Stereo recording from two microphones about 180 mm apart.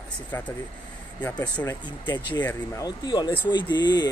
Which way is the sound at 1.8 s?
25° left (ahead or behind).